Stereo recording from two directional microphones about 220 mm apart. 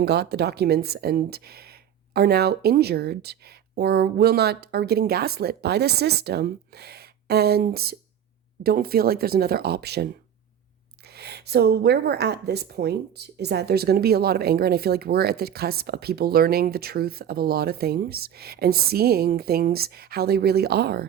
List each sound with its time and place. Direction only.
0.0 s speech: 50° right (ahead or behind)